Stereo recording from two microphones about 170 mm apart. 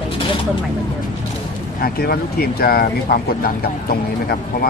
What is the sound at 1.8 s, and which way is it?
Speech, 65° left (ahead or behind).